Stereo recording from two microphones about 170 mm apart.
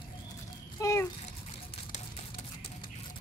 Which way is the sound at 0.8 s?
20° left (ahead or behind).